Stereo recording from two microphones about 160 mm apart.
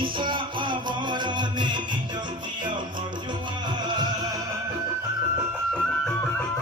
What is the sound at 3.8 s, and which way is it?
Music, 25° right (ahead or behind).